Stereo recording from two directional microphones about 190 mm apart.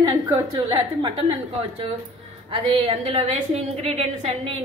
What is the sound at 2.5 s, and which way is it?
A woman's voice, 30° right (ahead or behind).